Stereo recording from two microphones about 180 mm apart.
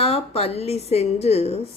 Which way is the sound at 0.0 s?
35° left (ahead or behind).